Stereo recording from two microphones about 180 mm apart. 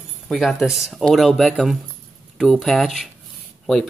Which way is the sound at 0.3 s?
Centre (ahead or behind).